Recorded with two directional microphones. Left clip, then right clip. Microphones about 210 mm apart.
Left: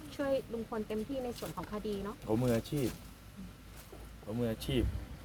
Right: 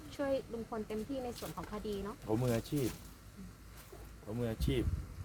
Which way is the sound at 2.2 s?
15° right (ahead or behind).